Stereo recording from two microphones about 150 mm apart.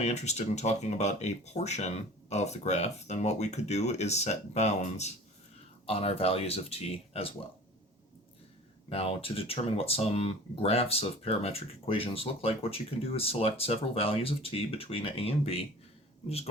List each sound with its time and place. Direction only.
0.0 s speech: 50° left (ahead or behind)
8.9 s speech: 40° left (ahead or behind)